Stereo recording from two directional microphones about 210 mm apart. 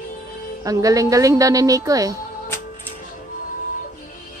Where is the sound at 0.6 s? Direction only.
15° right (ahead or behind).